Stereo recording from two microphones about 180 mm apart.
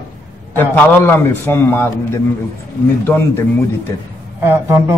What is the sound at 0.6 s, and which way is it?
A man's voice, 10° left (ahead or behind).